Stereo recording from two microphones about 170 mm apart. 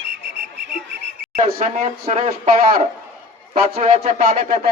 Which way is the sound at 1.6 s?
45° right (ahead or behind).